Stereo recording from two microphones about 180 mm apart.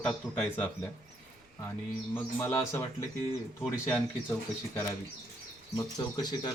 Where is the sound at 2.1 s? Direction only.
15° left (ahead or behind).